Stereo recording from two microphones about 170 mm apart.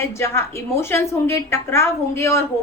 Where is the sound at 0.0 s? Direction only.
15° left (ahead or behind).